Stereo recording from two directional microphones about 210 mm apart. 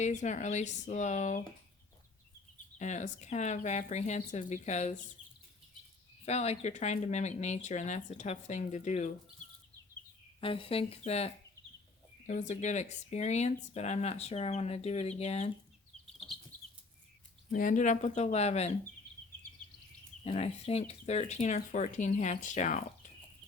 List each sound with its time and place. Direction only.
0.0 s a woman's voice: 35° left (ahead or behind)
2.7 s a woman's voice: 35° left (ahead or behind)
6.2 s a woman's voice: 30° left (ahead or behind)
10.4 s a woman's voice: 25° left (ahead or behind)
16.1 s chicken: centre (ahead or behind)
17.5 s a woman's voice: 40° left (ahead or behind)
20.2 s a woman's voice: 30° left (ahead or behind)